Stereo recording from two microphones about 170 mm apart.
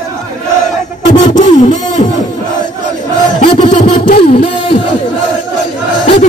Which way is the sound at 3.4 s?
45° left (ahead or behind).